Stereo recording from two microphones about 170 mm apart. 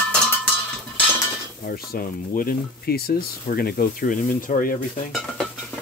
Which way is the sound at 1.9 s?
60° left (ahead or behind).